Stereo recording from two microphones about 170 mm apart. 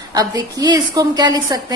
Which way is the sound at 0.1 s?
20° right (ahead or behind).